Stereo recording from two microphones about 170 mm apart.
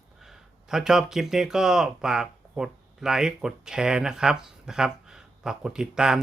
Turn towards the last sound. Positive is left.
turn(degrees=-5)  # may be behind; listen again after turning